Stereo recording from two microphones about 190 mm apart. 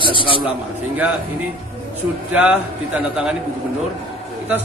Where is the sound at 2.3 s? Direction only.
10° right (ahead or behind).